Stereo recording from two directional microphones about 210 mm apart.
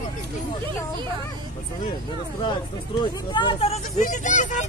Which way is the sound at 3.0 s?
20° left (ahead or behind).